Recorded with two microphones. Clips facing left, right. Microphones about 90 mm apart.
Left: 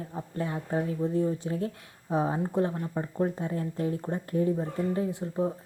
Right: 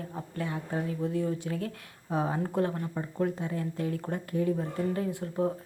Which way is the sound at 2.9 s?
30° left (ahead or behind).